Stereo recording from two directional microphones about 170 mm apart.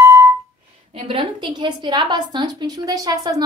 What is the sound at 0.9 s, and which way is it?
A woman's voice, 30° right (ahead or behind).